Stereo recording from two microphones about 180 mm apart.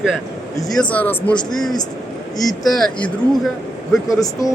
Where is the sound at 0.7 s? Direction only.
5° left (ahead or behind).